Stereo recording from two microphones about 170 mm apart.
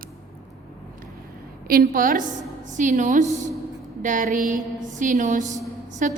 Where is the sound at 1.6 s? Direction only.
55° right (ahead or behind).